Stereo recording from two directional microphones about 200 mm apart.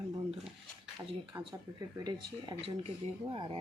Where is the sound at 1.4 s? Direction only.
20° right (ahead or behind).